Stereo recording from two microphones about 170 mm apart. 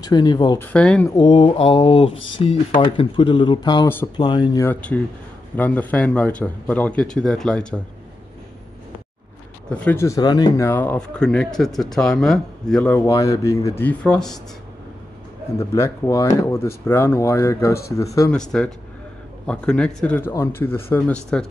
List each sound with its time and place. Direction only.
0.0 s speech: 25° left (ahead or behind)
0.6 s speech: 5° left (ahead or behind)
1.0 s speech: 25° left (ahead or behind)
4.6 s speech: 10° left (ahead or behind)
9.7 s speech: 15° left (ahead or behind)
13.0 s speech: 20° left (ahead or behind)
15.5 s speech: 15° left (ahead or behind)
18.5 s speech: 5° left (ahead or behind)